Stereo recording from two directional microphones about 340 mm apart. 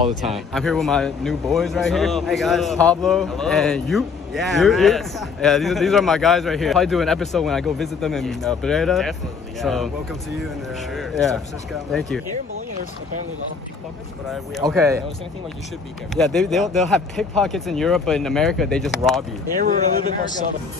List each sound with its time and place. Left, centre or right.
0.5 s speech: centre
10.9 s speech: centre
14.7 s speech: centre
16.2 s speech: centre
19.6 s a man's voice: right